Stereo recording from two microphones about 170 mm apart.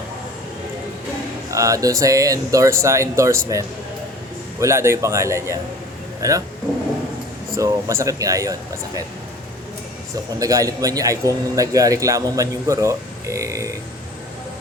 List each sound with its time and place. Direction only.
1.5 s a man's voice: 20° right (ahead or behind)
4.6 s a man's voice: 15° right (ahead or behind)
7.5 s a man's voice: 20° right (ahead or behind)
10.4 s a man's voice: 20° right (ahead or behind)